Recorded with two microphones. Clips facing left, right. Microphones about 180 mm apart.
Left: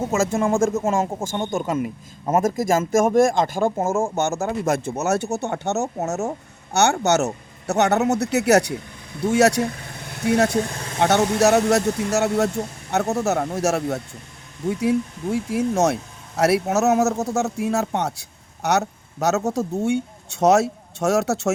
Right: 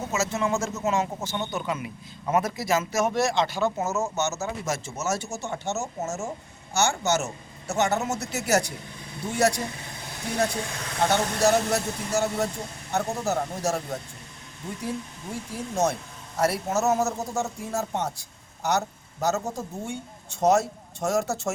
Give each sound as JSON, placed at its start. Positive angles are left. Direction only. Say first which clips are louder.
{"t": 0.0, "sound": "speech", "louder": "left 6 dB", "side_deg": 50}